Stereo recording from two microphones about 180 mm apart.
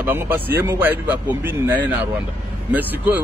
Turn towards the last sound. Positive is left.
turn(degrees=-10)  # may be behind; listen again after turning